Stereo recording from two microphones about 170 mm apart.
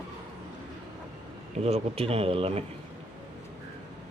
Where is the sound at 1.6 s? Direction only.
40° right (ahead or behind).